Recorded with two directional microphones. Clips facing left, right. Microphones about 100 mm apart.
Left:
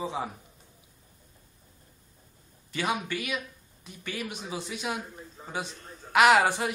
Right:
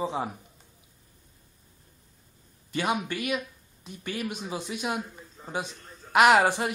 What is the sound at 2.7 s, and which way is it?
Speech, 45° right (ahead or behind).